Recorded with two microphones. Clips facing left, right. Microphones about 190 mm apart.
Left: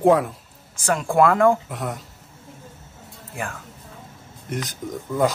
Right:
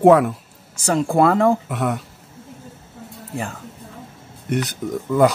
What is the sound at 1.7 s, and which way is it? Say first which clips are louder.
Speech: right 7 dB; 70° right (ahead or behind).